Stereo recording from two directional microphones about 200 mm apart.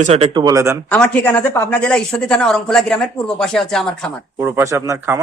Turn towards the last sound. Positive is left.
turn(degrees=-15)  # may be behind; listen again after turning